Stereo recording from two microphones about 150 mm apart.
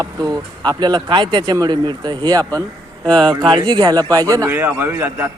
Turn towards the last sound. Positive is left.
turn(degrees=-10)  # may be behind; listen again after turning